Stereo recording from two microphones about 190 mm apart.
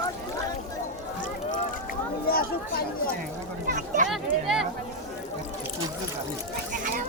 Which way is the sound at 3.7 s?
45° right (ahead or behind).